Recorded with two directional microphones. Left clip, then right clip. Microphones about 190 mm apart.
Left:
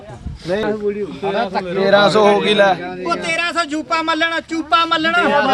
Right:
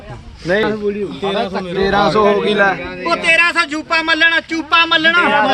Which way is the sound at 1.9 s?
45° left (ahead or behind).